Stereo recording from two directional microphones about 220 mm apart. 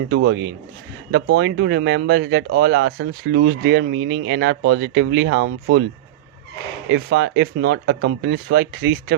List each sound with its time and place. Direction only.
0.3 s speech: 55° right (ahead or behind)
6.9 s speech: 50° right (ahead or behind)